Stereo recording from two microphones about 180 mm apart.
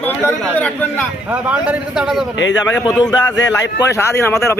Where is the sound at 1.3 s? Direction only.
5° right (ahead or behind).